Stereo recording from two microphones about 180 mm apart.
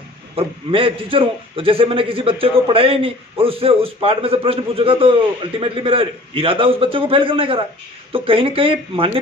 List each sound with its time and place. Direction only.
0.4 s a man's voice: 30° right (ahead or behind)